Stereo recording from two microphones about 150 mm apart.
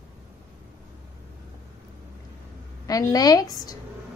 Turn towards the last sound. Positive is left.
turn(degrees=25)  # may be behind; listen again after turning